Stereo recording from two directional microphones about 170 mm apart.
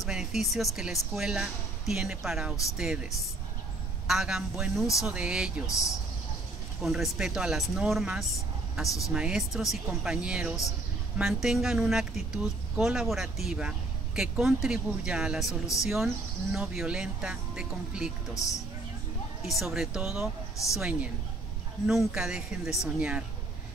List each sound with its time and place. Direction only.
0.0 s speech: centre (ahead or behind)
4.1 s speech: 5° right (ahead or behind)
5.7 s speech: 20° left (ahead or behind)
6.8 s speech: 5° right (ahead or behind)
8.8 s speech: 20° left (ahead or behind)
9.1 s speech: 5° right (ahead or behind)
18.3 s speech: 20° left (ahead or behind)
19.5 s speech: centre (ahead or behind)